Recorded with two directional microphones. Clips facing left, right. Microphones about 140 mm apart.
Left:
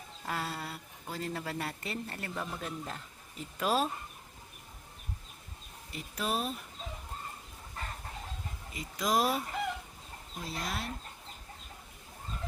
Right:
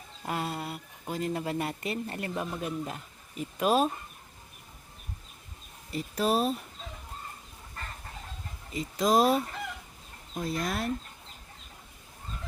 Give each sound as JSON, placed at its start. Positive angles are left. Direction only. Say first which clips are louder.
{"t": 0.3, "sound": "speech", "louder": "right 4 dB", "side_deg": -20}
{"t": 5.9, "sound": "speech", "louder": "right 7 dB", "side_deg": -35}
{"t": 8.7, "sound": "speech", "louder": "right 6 dB", "side_deg": -30}
{"t": 10.3, "sound": "speech", "louder": "right 7 dB", "side_deg": -50}